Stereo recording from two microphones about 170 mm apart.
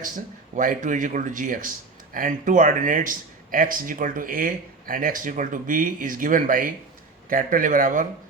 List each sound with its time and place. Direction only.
0.5 s speech: 50° right (ahead or behind)